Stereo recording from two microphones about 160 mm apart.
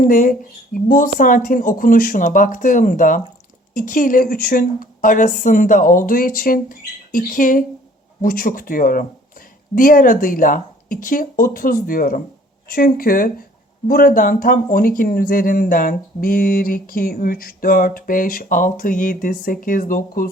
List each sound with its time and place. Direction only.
0.0 s speech: 55° left (ahead or behind)